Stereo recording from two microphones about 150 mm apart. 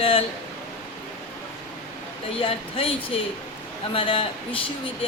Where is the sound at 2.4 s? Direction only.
40° left (ahead or behind).